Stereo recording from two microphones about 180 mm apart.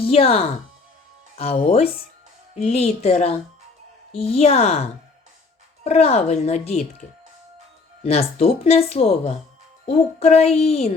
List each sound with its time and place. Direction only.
0.0 s speech: 35° left (ahead or behind)
8.0 s speech: 35° left (ahead or behind)